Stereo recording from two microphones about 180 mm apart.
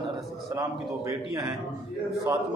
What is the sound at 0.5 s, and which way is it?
A man's voice, 20° right (ahead or behind).